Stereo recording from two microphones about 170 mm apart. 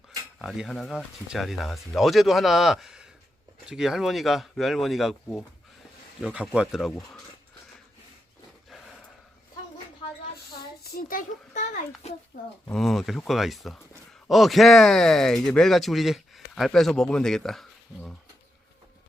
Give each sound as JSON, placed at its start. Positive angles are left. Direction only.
{"t": 0.3, "sound": "speech", "side_deg": 0}
{"t": 10.9, "sound": "a child's voice", "side_deg": 50}
{"t": 12.3, "sound": "speech", "side_deg": 55}
{"t": 12.7, "sound": "speech", "side_deg": 0}